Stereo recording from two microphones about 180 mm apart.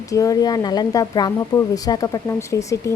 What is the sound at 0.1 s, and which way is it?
A woman's voice, 20° left (ahead or behind).